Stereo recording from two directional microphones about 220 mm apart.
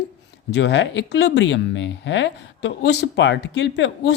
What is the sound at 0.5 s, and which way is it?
Speech, 55° left (ahead or behind).